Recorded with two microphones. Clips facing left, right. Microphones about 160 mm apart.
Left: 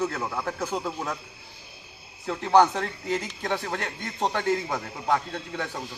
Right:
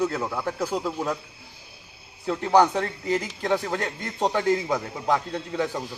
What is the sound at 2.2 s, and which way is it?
Speech, 10° right (ahead or behind).